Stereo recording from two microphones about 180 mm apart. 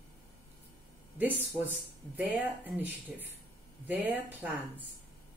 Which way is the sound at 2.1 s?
10° right (ahead or behind).